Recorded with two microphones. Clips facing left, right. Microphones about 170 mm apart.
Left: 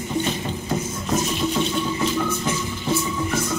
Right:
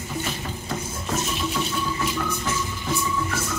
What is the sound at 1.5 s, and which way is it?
Music, 20° left (ahead or behind).